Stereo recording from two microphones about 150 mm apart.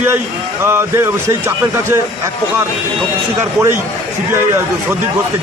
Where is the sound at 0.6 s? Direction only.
15° right (ahead or behind).